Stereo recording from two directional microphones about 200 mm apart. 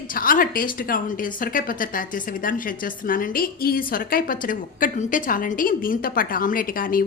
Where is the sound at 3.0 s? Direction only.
45° left (ahead or behind).